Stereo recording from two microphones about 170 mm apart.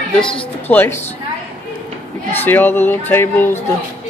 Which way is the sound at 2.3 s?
10° left (ahead or behind).